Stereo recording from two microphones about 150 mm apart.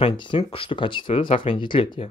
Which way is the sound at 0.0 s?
35° left (ahead or behind).